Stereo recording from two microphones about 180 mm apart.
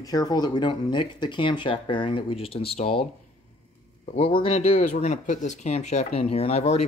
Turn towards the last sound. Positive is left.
turn(degrees=35)  # may be behind; listen again after turning